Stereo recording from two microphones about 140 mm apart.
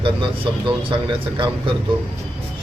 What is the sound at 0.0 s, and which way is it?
Speech, 40° right (ahead or behind).